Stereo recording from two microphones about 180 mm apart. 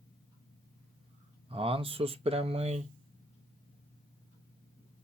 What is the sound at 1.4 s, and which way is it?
Speech, 30° right (ahead or behind).